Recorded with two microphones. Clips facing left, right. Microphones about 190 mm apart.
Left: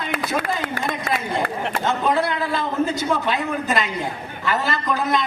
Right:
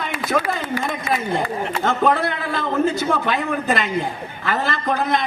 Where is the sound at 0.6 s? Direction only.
60° left (ahead or behind).